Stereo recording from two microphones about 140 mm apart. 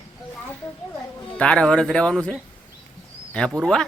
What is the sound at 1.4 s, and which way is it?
Speech, 5° left (ahead or behind).